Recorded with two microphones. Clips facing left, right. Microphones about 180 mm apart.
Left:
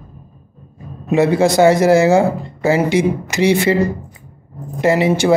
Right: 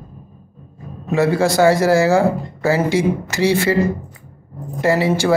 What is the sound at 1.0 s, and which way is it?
Speech, 20° left (ahead or behind).